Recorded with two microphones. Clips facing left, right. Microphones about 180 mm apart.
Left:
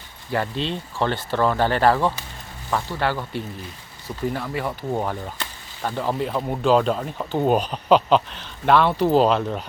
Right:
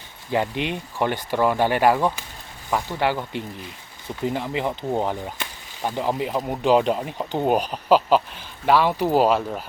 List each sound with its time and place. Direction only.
0.3 s speech: 15° right (ahead or behind)